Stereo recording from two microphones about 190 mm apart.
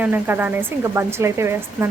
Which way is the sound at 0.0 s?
10° right (ahead or behind).